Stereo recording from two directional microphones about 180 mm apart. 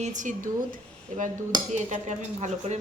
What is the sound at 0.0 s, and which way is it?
A woman's voice, 45° right (ahead or behind).